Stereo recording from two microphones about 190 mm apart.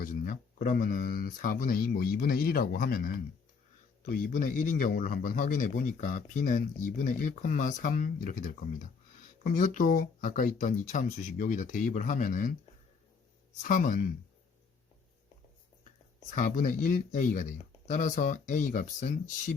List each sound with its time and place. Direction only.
0.0 s a man's voice: 45° left (ahead or behind)
13.6 s a man's voice: 45° left (ahead or behind)
16.3 s a man's voice: 45° left (ahead or behind)